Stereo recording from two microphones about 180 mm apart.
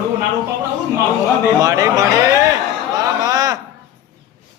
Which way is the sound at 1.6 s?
20° right (ahead or behind).